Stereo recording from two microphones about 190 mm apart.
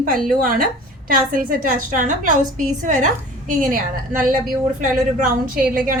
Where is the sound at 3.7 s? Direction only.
45° right (ahead or behind).